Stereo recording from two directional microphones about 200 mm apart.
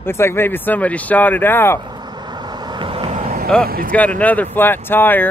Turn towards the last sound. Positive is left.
turn(degrees=10)  # may be behind; listen again after turning